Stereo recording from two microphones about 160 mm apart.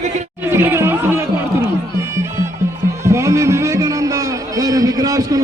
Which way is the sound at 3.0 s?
20° right (ahead or behind).